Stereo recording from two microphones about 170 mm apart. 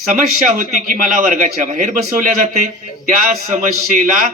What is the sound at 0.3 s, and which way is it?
A man's voice, 50° right (ahead or behind).